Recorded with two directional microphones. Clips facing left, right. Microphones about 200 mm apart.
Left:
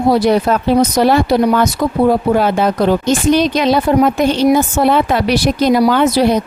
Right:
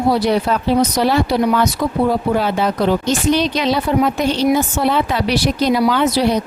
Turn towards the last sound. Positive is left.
turn(degrees=50)  # may be behind; listen again after turning